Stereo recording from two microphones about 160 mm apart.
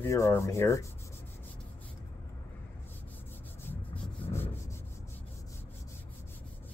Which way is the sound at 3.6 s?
15° left (ahead or behind).